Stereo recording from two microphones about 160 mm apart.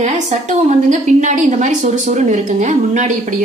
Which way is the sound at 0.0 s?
45° right (ahead or behind).